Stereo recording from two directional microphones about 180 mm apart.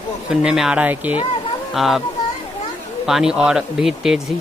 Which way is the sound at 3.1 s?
5° right (ahead or behind).